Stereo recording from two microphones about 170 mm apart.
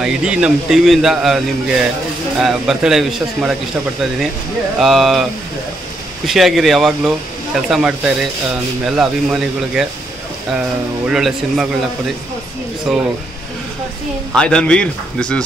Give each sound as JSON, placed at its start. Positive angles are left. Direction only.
{"t": 0.0, "sound": "a man's voice", "side_deg": -5}
{"t": 4.7, "sound": "a man's voice", "side_deg": 0}
{"t": 6.2, "sound": "a man's voice", "side_deg": 0}
{"t": 11.1, "sound": "a man's voice", "side_deg": 0}
{"t": 12.9, "sound": "a man's voice", "side_deg": 0}
{"t": 14.3, "sound": "a man's voice", "side_deg": 5}